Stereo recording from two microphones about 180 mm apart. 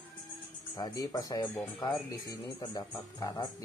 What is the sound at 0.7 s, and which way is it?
Speech, 20° left (ahead or behind).